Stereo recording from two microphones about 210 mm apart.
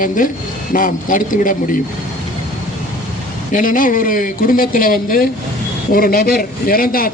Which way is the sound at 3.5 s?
40° left (ahead or behind).